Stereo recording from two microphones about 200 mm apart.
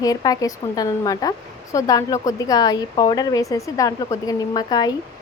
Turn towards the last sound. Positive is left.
turn(degrees=20)  # may be behind; listen again after turning